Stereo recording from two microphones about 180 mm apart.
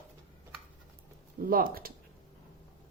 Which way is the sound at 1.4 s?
50° right (ahead or behind).